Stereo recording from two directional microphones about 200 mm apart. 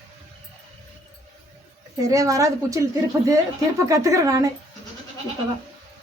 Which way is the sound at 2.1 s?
15° right (ahead or behind).